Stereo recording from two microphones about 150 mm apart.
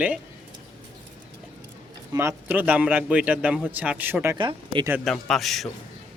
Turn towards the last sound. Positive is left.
turn(degrees=0)  # may be behind; listen again after turning